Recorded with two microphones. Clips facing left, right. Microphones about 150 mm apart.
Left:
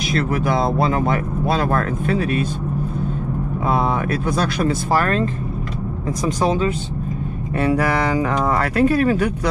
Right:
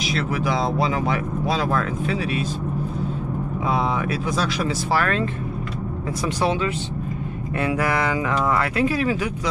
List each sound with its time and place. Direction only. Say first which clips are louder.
0.1 s speech: left 4 dB; 50° left (ahead or behind)
3.6 s speech: left 3 dB; 55° left (ahead or behind)
5.0 s speech: left 3 dB; 40° left (ahead or behind)